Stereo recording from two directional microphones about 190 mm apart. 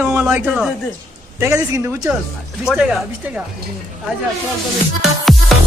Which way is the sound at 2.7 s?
5° right (ahead or behind).